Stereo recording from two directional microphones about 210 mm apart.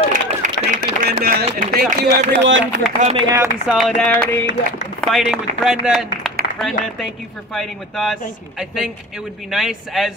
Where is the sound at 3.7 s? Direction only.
Centre (ahead or behind).